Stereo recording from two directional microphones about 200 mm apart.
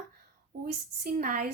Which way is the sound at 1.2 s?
45° right (ahead or behind).